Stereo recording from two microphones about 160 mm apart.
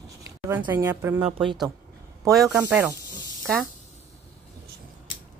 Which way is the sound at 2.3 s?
Centre (ahead or behind).